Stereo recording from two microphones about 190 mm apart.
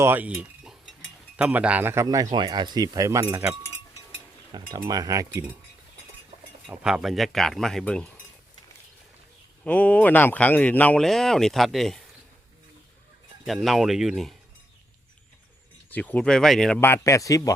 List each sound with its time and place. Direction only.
0.0 s a sound: 10° right (ahead or behind)
1.4 s speech: 5° right (ahead or behind)
4.5 s speech: 20° right (ahead or behind)
6.7 s speech: 5° right (ahead or behind)
9.6 s speech: 5° left (ahead or behind)
13.4 s speech: centre (ahead or behind)
15.9 s speech: 10° left (ahead or behind)